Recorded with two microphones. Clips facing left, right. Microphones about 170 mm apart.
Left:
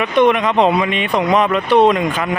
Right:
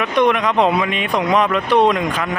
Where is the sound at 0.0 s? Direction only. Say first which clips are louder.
Left 2 dB; centre (ahead or behind).